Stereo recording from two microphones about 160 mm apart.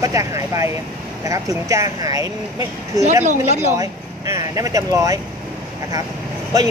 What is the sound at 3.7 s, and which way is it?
Speech, 20° right (ahead or behind).